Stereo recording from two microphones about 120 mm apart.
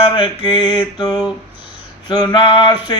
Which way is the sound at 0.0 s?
45° left (ahead or behind).